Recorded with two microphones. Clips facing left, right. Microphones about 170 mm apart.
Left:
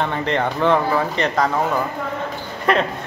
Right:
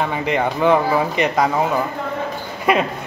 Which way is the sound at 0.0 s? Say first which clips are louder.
Right 1 dB; 10° right (ahead or behind).